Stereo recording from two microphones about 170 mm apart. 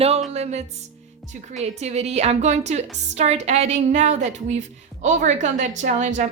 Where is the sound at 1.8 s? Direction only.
40° right (ahead or behind).